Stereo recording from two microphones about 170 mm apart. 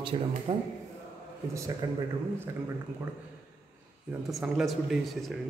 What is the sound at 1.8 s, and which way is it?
Speech, 20° right (ahead or behind).